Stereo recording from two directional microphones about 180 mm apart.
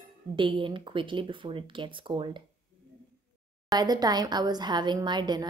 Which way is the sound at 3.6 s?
20° right (ahead or behind).